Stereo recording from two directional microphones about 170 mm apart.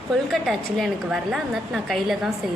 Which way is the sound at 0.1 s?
Centre (ahead or behind).